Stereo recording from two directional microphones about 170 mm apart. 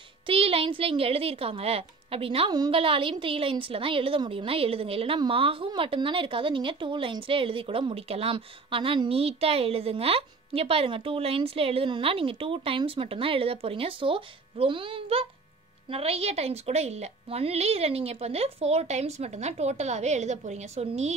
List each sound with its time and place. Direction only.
0.3 s a child's voice: 35° right (ahead or behind)